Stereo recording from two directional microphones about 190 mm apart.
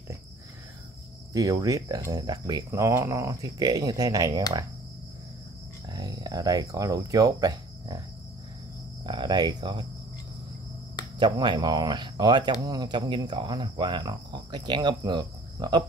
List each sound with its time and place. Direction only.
1.3 s cricket: 20° right (ahead or behind)
5.9 s speech: 20° right (ahead or behind)
9.0 s speech: 25° right (ahead or behind)
11.1 s cricket: 25° right (ahead or behind)